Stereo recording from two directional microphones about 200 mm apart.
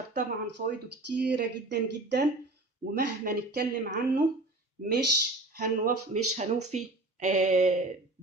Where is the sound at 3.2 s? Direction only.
50° right (ahead or behind).